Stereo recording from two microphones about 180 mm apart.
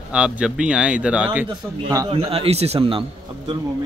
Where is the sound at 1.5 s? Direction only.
25° right (ahead or behind).